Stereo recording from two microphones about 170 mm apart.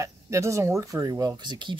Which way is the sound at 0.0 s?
15° right (ahead or behind).